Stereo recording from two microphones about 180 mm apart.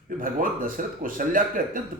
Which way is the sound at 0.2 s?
50° right (ahead or behind).